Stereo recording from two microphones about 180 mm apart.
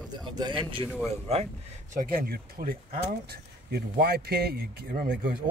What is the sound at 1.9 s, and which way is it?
Speech, 55° right (ahead or behind).